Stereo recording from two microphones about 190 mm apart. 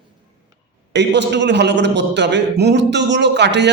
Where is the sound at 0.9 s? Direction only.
65° right (ahead or behind).